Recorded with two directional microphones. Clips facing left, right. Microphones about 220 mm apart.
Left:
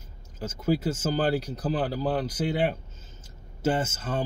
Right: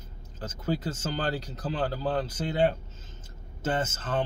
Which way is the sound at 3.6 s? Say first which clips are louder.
Left 3 dB; 10° left (ahead or behind).